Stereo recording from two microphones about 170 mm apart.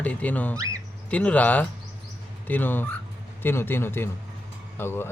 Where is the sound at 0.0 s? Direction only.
10° left (ahead or behind).